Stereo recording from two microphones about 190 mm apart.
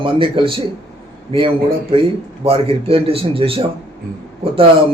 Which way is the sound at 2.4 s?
30° right (ahead or behind).